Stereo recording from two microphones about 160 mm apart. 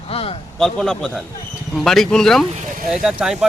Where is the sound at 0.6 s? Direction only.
Centre (ahead or behind).